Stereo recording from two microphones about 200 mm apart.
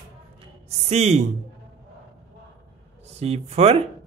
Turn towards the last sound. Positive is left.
turn(degrees=-30)  # may be behind; listen again after turning